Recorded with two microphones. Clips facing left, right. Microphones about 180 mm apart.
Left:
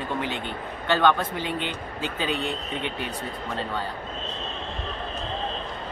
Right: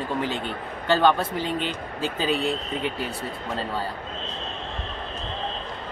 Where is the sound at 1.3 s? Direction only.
40° right (ahead or behind).